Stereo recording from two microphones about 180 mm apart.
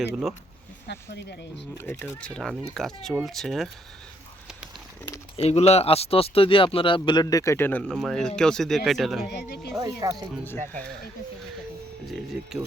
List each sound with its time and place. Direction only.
0.1 s speech: centre (ahead or behind)
0.9 s speech: 65° left (ahead or behind)
1.8 s speech: 15° left (ahead or behind)
5.4 s speech: 35° left (ahead or behind); by 9.3 s centre (ahead or behind)
9.3 s speech: 65° left (ahead or behind)
10.0 s speech: 20° right (ahead or behind)
12.0 s speech: centre (ahead or behind)